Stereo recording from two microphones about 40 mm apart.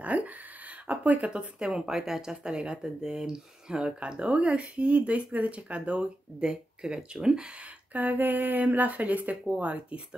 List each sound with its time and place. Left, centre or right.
0.0 s a sound: right
0.8 s speech: right
1.7 s speech: centre
7.9 s speech: right
9.6 s speech: right